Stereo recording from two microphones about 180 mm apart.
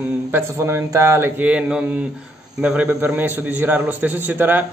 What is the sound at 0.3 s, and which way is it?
A man's voice, 15° right (ahead or behind).